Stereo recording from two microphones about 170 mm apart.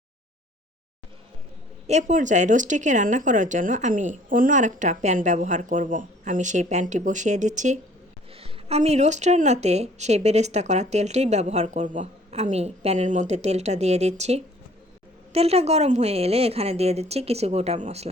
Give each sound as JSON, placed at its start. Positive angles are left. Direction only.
{"t": 1.9, "sound": "speech", "side_deg": -45}
{"t": 8.3, "sound": "a woman's voice", "side_deg": -35}